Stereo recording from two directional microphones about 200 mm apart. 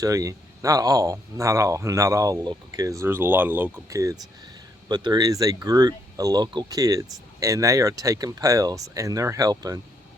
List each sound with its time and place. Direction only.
0.0 s speech: 15° right (ahead or behind)